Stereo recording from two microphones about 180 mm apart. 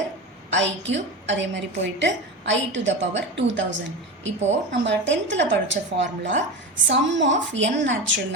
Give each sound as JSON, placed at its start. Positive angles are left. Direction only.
{"t": 0.5, "sound": "a woman's voice", "side_deg": -85}